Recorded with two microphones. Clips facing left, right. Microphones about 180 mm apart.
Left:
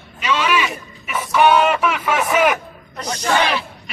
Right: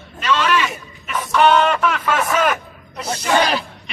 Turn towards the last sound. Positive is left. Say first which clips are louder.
# right 1 dB
turn(degrees=-40)  # may be behind; listen again after turning